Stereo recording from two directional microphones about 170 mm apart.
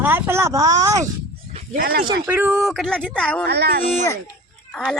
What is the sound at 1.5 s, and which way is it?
Speech, 55° right (ahead or behind).